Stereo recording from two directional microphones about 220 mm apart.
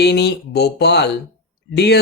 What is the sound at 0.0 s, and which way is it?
Speech, 50° left (ahead or behind).